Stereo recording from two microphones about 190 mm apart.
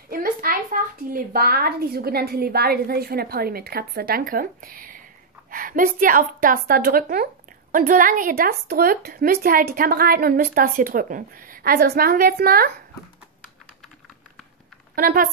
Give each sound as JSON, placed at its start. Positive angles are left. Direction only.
{"t": 0.1, "sound": "speech", "side_deg": -50}
{"t": 15.0, "sound": "speech", "side_deg": -45}